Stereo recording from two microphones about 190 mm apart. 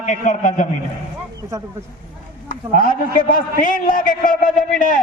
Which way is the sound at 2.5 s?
50° left (ahead or behind).